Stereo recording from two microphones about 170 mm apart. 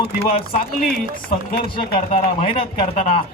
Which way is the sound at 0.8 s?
55° left (ahead or behind).